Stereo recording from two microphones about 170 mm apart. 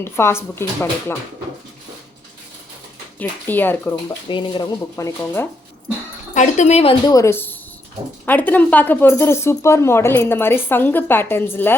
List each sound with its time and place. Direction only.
0.0 s speech: 15° left (ahead or behind)
3.2 s speech: 10° left (ahead or behind)
4.3 s speech: 30° left (ahead or behind); by 5.5 s 15° left (ahead or behind)
6.3 s speech: 45° left (ahead or behind)
7.0 s speech: 20° left (ahead or behind)